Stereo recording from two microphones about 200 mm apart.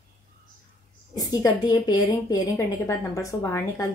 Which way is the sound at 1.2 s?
20° left (ahead or behind).